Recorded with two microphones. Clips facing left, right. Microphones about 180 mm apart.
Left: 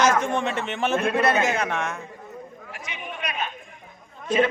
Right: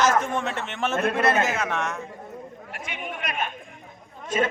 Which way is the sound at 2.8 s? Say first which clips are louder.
Right 1 dB; 55° right (ahead or behind).